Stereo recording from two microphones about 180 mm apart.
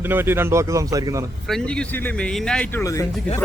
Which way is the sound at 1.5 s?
5° left (ahead or behind).